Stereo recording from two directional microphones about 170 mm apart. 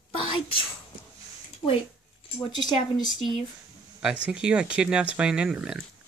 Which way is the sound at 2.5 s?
25° left (ahead or behind).